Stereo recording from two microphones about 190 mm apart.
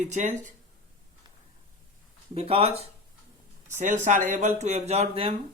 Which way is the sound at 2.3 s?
30° right (ahead or behind).